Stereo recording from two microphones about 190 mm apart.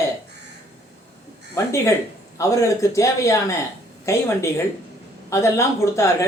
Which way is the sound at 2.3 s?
15° left (ahead or behind).